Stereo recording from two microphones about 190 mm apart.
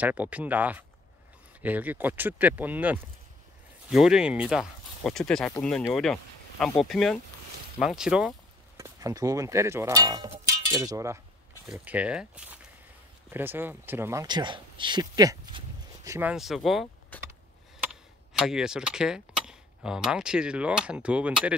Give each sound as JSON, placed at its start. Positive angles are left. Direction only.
{"t": 0.0, "sound": "speech", "side_deg": -10}
{"t": 8.7, "sound": "speech", "side_deg": -15}
{"t": 11.6, "sound": "speech", "side_deg": -5}
{"t": 18.4, "sound": "speech", "side_deg": -5}